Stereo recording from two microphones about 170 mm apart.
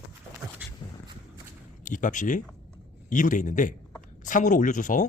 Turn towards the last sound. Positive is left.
turn(degrees=50)  # may be behind; listen again after turning